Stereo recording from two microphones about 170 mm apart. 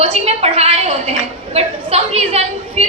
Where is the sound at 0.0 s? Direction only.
35° right (ahead or behind).